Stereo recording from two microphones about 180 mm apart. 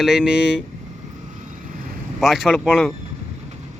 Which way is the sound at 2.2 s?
Centre (ahead or behind).